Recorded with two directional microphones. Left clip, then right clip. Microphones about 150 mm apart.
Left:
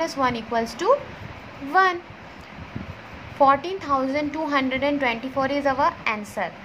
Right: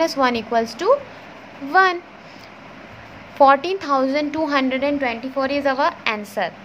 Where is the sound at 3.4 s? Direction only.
25° right (ahead or behind).